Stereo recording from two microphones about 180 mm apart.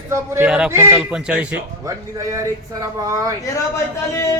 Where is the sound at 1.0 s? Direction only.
5° right (ahead or behind).